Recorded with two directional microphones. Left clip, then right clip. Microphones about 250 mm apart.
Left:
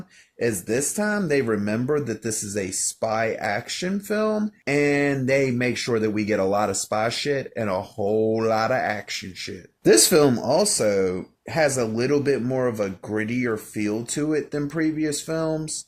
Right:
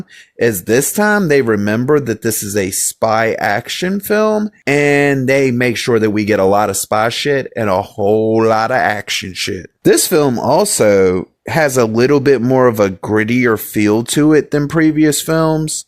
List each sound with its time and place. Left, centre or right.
0.3 s speech: right